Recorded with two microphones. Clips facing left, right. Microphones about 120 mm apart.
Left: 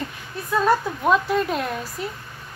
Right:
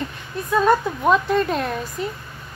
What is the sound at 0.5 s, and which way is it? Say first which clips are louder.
A woman's voice: right 2 dB; centre (ahead or behind).